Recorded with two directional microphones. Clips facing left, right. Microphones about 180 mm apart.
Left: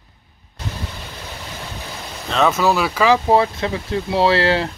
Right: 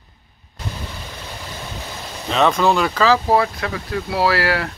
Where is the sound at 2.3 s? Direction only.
Centre (ahead or behind); by 4.7 s 25° left (ahead or behind).